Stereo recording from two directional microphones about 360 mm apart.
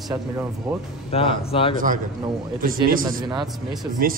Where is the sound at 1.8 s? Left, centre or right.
Right.